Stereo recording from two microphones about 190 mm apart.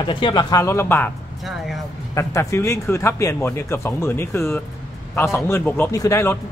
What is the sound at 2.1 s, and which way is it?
Speech, 15° left (ahead or behind).